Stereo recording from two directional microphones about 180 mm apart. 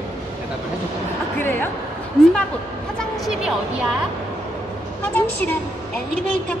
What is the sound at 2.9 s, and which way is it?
Speech, centre (ahead or behind).